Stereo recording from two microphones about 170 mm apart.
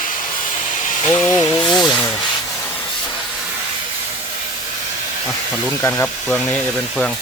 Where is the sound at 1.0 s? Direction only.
5° left (ahead or behind).